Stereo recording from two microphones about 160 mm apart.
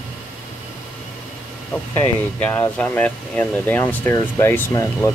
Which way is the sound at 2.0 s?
15° left (ahead or behind).